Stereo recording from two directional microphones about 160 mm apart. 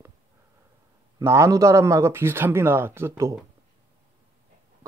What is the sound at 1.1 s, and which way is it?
Speech, 20° right (ahead or behind).